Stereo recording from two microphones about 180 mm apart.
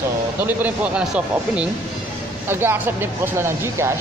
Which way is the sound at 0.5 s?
10° right (ahead or behind).